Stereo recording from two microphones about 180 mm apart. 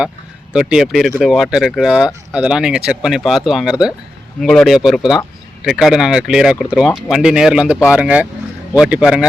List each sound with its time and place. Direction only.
0.5 s speech: 5° right (ahead or behind)